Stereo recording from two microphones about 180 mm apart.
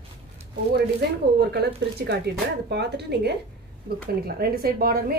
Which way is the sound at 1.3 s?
65° right (ahead or behind).